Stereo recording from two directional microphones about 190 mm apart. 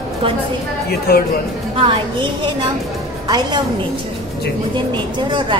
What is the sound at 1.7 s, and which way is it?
A woman's voice, 25° right (ahead or behind).